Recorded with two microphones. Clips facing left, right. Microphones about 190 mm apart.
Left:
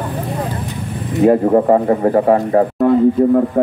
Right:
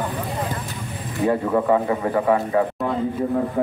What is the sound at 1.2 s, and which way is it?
A man's voice, 45° left (ahead or behind).